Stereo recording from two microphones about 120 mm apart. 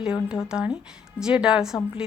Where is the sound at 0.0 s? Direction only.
5° right (ahead or behind).